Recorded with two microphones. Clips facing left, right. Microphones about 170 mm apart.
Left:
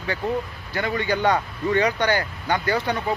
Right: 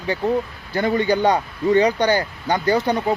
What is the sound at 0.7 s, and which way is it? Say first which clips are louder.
Speech: right 6 dB; 35° right (ahead or behind).